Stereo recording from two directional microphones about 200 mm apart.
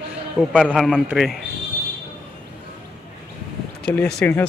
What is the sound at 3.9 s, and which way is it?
Speech, 5° left (ahead or behind).